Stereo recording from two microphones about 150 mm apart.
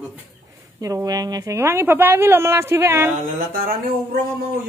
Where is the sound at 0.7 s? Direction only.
25° right (ahead or behind).